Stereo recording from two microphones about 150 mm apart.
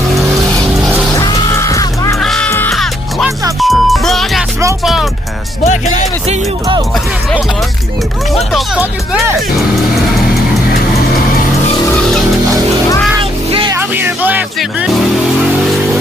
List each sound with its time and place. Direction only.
0.1 s vehicle: centre (ahead or behind)
1.1 s music: 25° left (ahead or behind)
2.1 s music: 5° left (ahead or behind)
5.6 s music: 55° left (ahead or behind)
8.4 s speech: centre (ahead or behind)
13.7 s music: 15° right (ahead or behind)
14.6 s music: centre (ahead or behind)